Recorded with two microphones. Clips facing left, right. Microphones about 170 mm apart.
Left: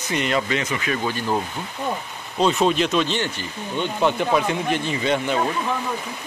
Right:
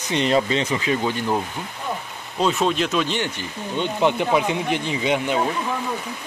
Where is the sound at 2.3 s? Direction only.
Centre (ahead or behind).